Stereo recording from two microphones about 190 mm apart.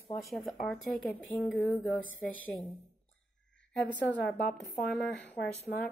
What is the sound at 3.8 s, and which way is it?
Speech, 5° left (ahead or behind).